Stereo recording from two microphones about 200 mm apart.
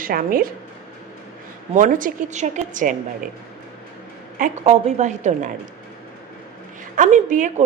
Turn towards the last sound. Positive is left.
turn(degrees=-40)  # may be behind; listen again after turning